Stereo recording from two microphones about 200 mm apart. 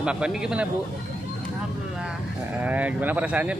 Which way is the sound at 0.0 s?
5° right (ahead or behind).